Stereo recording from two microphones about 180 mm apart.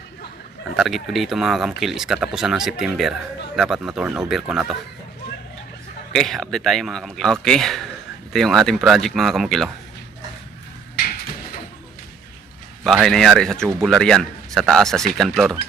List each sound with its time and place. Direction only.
0.8 s speech: centre (ahead or behind)
6.1 s speech: centre (ahead or behind)
10.9 s a sound: 55° left (ahead or behind)
12.8 s speech: centre (ahead or behind)